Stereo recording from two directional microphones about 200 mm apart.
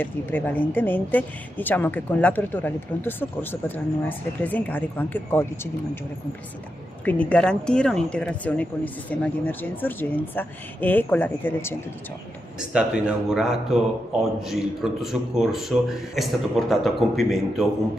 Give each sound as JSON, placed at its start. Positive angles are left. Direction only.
{"t": 0.0, "sound": "a woman's voice", "side_deg": 10}
{"t": 7.1, "sound": "a woman's voice", "side_deg": 5}
{"t": 12.5, "sound": "speech", "side_deg": -5}